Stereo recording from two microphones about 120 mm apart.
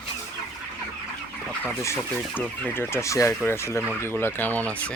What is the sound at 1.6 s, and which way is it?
Fowl, 25° left (ahead or behind).